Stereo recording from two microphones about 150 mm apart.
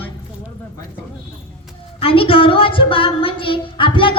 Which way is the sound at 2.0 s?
40° left (ahead or behind).